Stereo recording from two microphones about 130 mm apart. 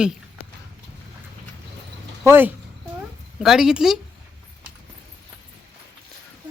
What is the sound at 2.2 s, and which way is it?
Speech, 15° right (ahead or behind).